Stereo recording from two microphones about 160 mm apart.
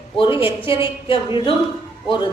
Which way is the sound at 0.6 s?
35° left (ahead or behind).